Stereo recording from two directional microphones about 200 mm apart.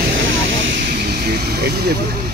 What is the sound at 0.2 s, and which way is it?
Vehicle, 65° right (ahead or behind).